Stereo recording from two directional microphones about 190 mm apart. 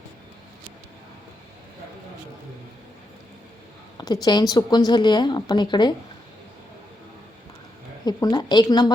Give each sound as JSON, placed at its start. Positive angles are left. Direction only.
{"t": 3.9, "sound": "a woman's voice", "side_deg": 20}
{"t": 8.0, "sound": "a woman's voice", "side_deg": 20}